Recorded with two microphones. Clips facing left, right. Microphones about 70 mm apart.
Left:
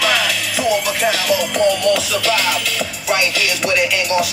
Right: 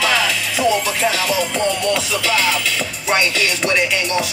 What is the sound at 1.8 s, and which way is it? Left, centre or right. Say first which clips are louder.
Music: left 3 dB; right.